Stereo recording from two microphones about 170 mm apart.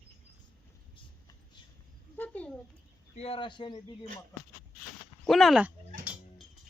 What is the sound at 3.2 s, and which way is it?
Speech, 35° left (ahead or behind).